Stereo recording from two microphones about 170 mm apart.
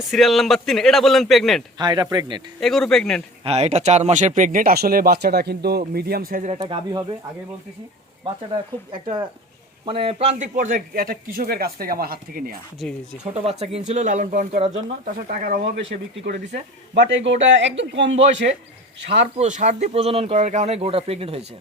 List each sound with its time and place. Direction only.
0.1 s a man's voice: centre (ahead or behind)
1.8 s speech: 25° right (ahead or behind)
2.6 s a man's voice: centre (ahead or behind)
3.4 s a man's voice: 40° right (ahead or behind); by 6.5 s 60° right (ahead or behind)
6.6 s speech: 25° right (ahead or behind)
8.9 s a man's voice: 30° right (ahead or behind); by 12.5 s 60° right (ahead or behind)
12.8 s a man's voice: centre (ahead or behind)
13.3 s speech: 40° right (ahead or behind)
15.3 s a man's voice: 55° right (ahead or behind)
16.2 s speech: 85° right
19.4 s speech: 45° right (ahead or behind)